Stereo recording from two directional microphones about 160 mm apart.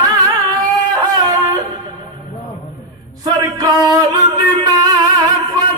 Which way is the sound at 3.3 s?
25° right (ahead or behind).